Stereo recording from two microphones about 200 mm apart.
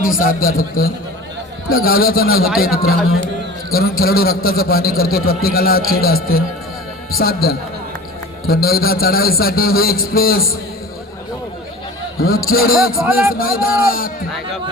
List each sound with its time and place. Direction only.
0.0 s a man's voice: 45° left (ahead or behind)
7.2 s a man's voice: 50° left (ahead or behind)
12.2 s a man's voice: 45° left (ahead or behind)
13.0 s speech: 5° right (ahead or behind)
13.3 s a man's voice: 45° left (ahead or behind)